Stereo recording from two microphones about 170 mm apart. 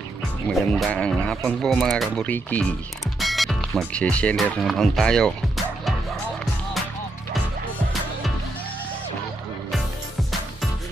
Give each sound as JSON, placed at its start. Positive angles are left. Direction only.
{"t": 0.5, "sound": "speech", "side_deg": 0}